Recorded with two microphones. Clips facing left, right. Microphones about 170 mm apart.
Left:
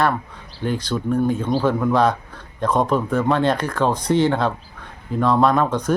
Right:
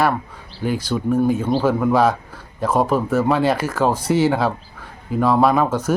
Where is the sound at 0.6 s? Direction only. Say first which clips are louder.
Right 2 dB; 10° right (ahead or behind).